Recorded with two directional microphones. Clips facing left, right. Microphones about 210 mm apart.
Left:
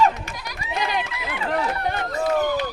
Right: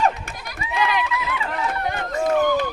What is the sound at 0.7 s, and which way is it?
Run, 40° left (ahead or behind).